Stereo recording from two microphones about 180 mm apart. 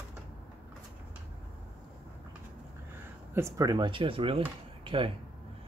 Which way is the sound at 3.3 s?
15° right (ahead or behind).